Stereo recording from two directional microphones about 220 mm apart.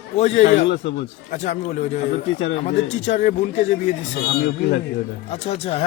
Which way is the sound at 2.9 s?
35° left (ahead or behind).